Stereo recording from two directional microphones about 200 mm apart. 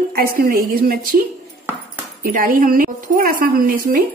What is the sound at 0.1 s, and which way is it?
A woman's voice, 45° right (ahead or behind).